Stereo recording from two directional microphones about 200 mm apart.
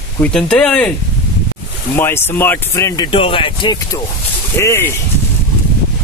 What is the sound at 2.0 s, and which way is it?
Speech, 10° left (ahead or behind).